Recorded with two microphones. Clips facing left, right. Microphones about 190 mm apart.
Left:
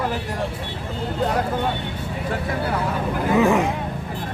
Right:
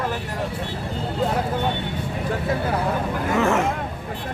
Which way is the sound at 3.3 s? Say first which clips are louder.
Left 3 dB; 15° left (ahead or behind).